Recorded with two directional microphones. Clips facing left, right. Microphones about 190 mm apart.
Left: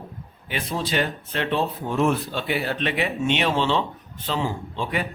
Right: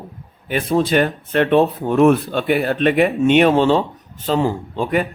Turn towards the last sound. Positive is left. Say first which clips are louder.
# right 8 dB
turn(degrees=-50)  # may be behind; listen again after turning